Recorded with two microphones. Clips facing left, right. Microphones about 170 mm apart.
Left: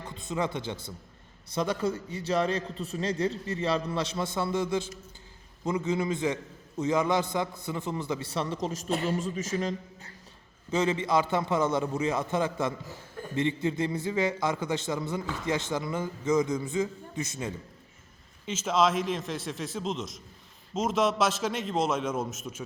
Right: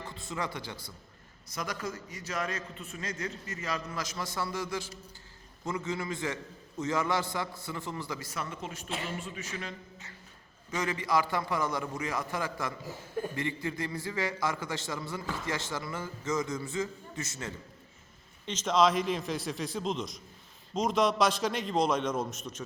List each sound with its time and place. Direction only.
0.1 s a man's voice: 20° left (ahead or behind); by 10.1 s 40° left (ahead or behind)
10.7 s a man's voice: 25° left (ahead or behind)
18.4 s a man's voice: 5° left (ahead or behind)